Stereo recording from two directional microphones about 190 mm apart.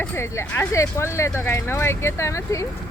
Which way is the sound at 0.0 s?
10° left (ahead or behind).